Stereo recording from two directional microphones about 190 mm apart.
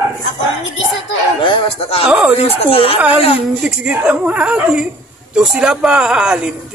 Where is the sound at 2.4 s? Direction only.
30° left (ahead or behind).